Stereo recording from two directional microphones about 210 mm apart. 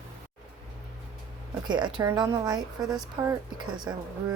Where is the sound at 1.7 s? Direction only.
20° right (ahead or behind).